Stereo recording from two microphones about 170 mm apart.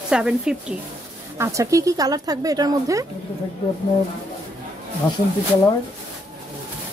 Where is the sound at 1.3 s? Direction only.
15° right (ahead or behind).